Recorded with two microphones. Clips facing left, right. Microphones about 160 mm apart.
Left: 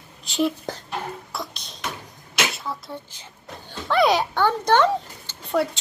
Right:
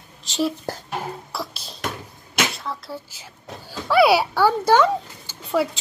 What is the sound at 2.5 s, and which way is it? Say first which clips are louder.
A child's voice: right 1 dB; centre (ahead or behind).